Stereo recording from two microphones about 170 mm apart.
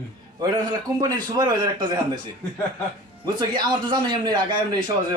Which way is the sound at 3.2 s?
25° right (ahead or behind).